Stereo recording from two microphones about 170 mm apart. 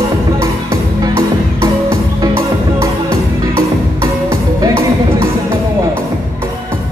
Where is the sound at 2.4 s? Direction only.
15° right (ahead or behind).